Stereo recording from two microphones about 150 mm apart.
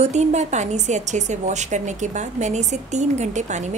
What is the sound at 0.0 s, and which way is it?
A woman's voice, 50° right (ahead or behind).